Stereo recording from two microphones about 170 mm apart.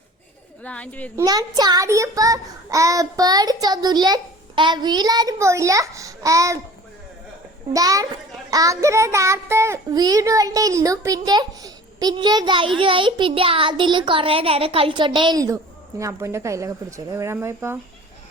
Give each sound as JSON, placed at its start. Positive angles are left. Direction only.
{"t": 0.6, "sound": "speech", "side_deg": 10}
{"t": 1.1, "sound": "a child's voice", "side_deg": -20}
{"t": 7.7, "sound": "a child's voice", "side_deg": -20}